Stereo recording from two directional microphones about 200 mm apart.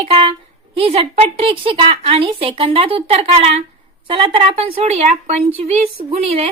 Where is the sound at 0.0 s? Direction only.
30° right (ahead or behind).